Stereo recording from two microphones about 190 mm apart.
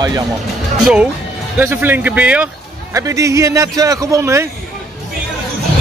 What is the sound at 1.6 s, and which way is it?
A man's voice, 10° right (ahead or behind).